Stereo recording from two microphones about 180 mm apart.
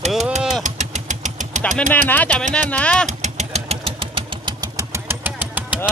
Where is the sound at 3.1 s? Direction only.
40° right (ahead or behind); by 5.8 s 10° right (ahead or behind).